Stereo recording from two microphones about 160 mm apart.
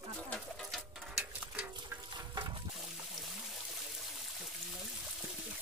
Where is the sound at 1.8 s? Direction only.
30° right (ahead or behind).